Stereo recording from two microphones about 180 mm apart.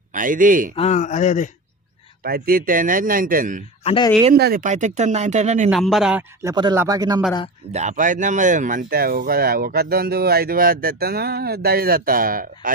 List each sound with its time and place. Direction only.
0.1 s speech: 50° right (ahead or behind)
0.7 s speech: 40° left (ahead or behind)
2.2 s speech: 55° right (ahead or behind)
3.8 s speech: 30° left (ahead or behind)
4.4 s speech: 55° right (ahead or behind)
5.7 s speech: centre (ahead or behind)
6.4 s speech: 20° right (ahead or behind)
7.7 s speech: 40° right (ahead or behind)